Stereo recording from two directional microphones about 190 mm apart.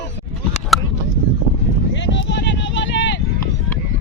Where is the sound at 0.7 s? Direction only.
Centre (ahead or behind).